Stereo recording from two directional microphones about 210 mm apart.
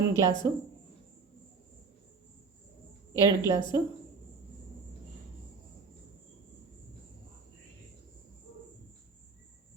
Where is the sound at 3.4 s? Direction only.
20° left (ahead or behind).